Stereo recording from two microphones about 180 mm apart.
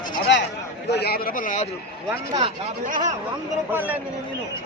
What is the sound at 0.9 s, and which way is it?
Speech, 60° left (ahead or behind).